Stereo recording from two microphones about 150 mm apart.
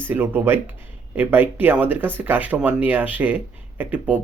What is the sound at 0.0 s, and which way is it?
Speech, 15° right (ahead or behind).